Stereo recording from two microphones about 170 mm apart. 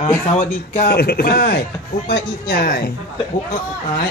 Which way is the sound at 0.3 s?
40° left (ahead or behind).